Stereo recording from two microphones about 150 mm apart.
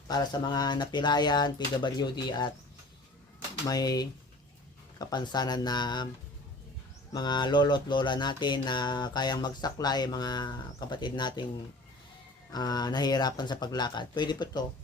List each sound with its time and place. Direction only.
0.1 s speech: 30° left (ahead or behind)
3.7 s speech: 25° left (ahead or behind)
7.1 s speech: 30° left (ahead or behind)
12.5 s speech: 25° left (ahead or behind)